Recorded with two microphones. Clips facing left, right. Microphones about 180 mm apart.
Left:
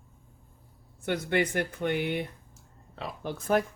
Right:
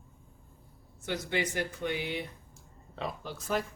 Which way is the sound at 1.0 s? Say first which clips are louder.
Left 5 dB; 55° left (ahead or behind).